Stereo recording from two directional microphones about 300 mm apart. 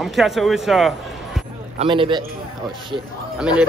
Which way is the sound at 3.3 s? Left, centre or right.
Centre.